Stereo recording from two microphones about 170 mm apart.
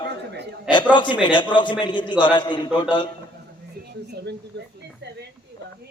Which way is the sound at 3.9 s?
75° right (ahead or behind).